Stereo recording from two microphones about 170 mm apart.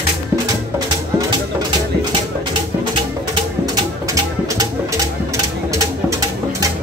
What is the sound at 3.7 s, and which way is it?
Music, 20° right (ahead or behind).